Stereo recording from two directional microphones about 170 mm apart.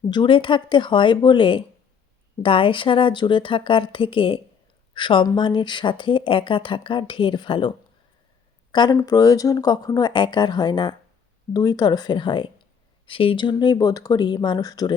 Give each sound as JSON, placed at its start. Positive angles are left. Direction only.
{"t": 0.1, "sound": "speech", "side_deg": 30}
{"t": 8.7, "sound": "speech", "side_deg": 25}